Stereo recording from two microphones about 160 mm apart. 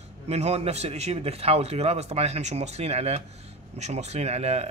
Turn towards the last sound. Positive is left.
turn(degrees=-40)  # may be behind; listen again after turning